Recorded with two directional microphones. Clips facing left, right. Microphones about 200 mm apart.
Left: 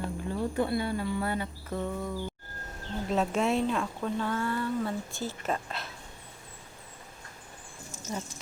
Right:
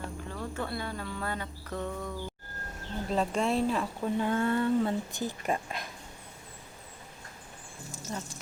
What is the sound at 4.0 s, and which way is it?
Speech, 20° right (ahead or behind).